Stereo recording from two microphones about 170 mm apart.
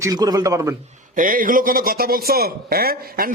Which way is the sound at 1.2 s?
55° right (ahead or behind).